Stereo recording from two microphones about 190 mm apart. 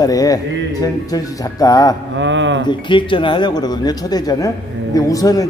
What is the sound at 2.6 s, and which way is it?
A man's voice, 25° left (ahead or behind).